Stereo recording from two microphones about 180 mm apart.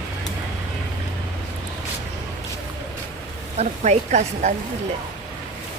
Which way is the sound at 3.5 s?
40° right (ahead or behind).